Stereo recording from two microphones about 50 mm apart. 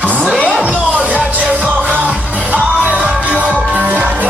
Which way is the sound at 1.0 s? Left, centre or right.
Right.